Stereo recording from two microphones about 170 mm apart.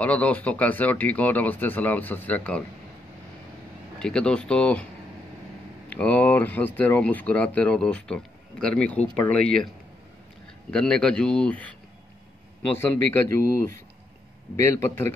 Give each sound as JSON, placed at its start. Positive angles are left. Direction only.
{"t": 0.0, "sound": "speech", "side_deg": 10}
{"t": 4.0, "sound": "speech", "side_deg": 5}
{"t": 5.9, "sound": "speech", "side_deg": 10}
{"t": 10.7, "sound": "speech", "side_deg": 5}
{"t": 12.7, "sound": "speech", "side_deg": 15}